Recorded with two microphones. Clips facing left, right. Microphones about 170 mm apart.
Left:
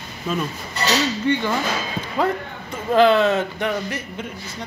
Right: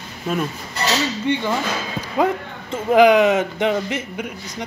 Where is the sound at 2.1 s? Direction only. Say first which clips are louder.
Right 3 dB; 20° right (ahead or behind).